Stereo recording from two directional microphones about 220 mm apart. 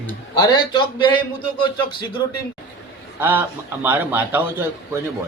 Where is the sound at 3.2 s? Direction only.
10° right (ahead or behind).